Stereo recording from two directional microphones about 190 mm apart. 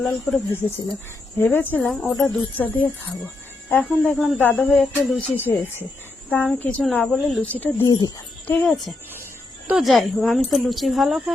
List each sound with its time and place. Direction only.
0.0 s speech: centre (ahead or behind)
7.9 s speech: 20° left (ahead or behind)
8.4 s speech: 5° left (ahead or behind)